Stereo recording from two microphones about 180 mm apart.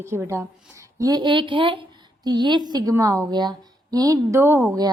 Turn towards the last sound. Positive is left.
turn(degrees=-15)  # may be behind; listen again after turning